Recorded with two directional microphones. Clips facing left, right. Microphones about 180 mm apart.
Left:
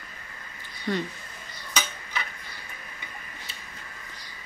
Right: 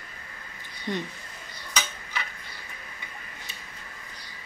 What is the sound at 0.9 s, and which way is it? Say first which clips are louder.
Speech: left 3 dB; 20° right (ahead or behind).